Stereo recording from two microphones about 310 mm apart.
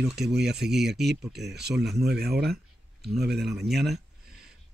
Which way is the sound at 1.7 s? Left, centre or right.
Centre.